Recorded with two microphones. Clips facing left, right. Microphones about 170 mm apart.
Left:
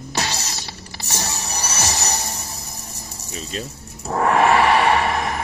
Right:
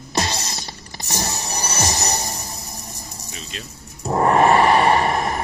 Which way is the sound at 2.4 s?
30° right (ahead or behind).